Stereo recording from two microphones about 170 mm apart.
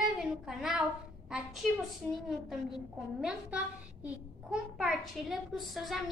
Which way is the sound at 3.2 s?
5° right (ahead or behind).